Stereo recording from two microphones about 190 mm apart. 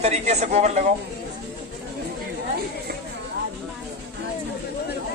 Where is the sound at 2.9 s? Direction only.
60° right (ahead or behind).